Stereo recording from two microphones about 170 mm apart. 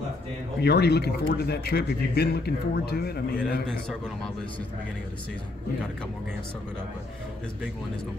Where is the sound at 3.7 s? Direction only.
5° left (ahead or behind).